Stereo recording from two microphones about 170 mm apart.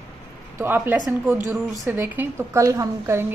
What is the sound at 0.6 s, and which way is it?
Speech, 10° right (ahead or behind).